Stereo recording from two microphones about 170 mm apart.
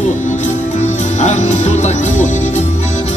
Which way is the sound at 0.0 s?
45° left (ahead or behind).